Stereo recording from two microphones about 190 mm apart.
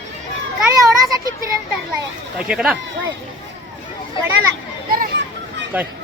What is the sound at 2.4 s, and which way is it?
Speech, 5° right (ahead or behind).